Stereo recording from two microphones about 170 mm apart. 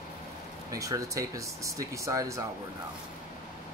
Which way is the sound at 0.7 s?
20° right (ahead or behind).